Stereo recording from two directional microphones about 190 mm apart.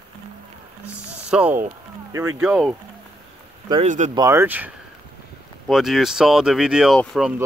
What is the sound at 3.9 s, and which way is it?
Speech, 40° right (ahead or behind).